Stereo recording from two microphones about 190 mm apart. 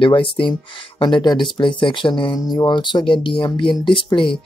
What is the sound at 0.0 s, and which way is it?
Speech, 25° left (ahead or behind).